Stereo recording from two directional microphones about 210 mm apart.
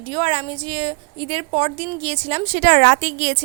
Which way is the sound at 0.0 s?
25° right (ahead or behind).